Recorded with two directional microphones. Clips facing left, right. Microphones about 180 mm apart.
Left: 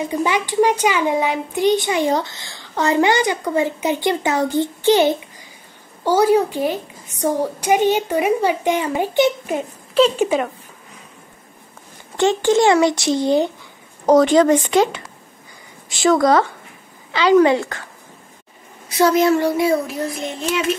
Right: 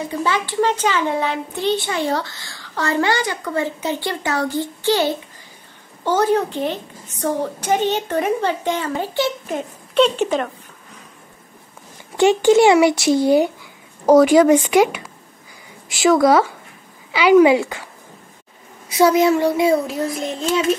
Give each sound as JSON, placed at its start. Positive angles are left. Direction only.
{"t": 0.0, "sound": "speech", "side_deg": 15}
{"t": 9.5, "sound": "speech", "side_deg": 5}
{"t": 12.2, "sound": "speech", "side_deg": -10}
{"t": 18.9, "sound": "speech", "side_deg": -15}